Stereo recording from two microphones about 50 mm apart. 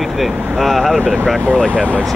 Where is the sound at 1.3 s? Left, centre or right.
Left.